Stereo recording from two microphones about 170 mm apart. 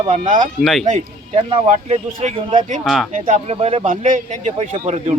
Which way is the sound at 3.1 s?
45° right (ahead or behind).